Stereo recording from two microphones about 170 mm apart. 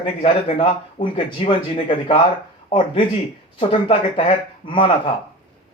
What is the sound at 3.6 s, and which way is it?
Speech, 30° left (ahead or behind).